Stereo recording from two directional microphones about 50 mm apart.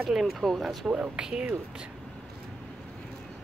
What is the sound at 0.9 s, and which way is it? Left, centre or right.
Speech, right.